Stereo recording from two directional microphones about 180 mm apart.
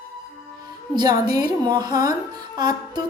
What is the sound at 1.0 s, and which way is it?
A woman's voice, 20° right (ahead or behind).